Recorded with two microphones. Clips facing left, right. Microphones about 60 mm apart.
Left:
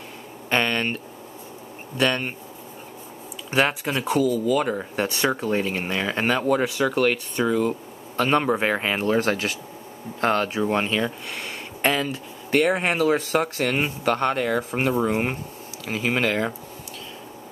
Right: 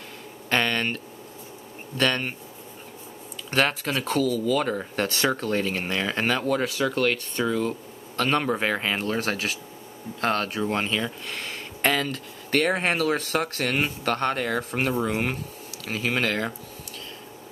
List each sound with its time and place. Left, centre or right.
0.5 s speech: centre
3.4 s speech: centre
15.8 s speech: left